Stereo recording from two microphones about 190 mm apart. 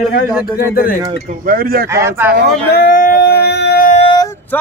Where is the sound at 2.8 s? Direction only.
50° left (ahead or behind).